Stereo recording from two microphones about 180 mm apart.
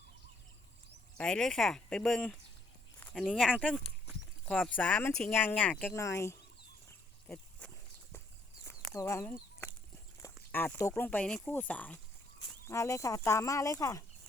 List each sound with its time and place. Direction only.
1.2 s speech: 5° left (ahead or behind)
3.0 s a sound: 10° left (ahead or behind)
3.2 s speech: 5° right (ahead or behind); by 6.4 s 15° left (ahead or behind)
6.8 s a sound: 5° left (ahead or behind)
8.9 s chicken: 15° left (ahead or behind)
10.5 s speech: 10° left (ahead or behind)